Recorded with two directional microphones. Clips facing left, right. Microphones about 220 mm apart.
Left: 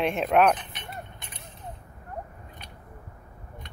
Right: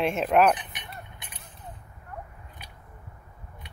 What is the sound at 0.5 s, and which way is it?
Mechanisms, 15° right (ahead or behind).